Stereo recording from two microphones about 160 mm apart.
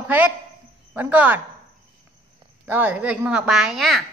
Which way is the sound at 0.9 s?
10° right (ahead or behind).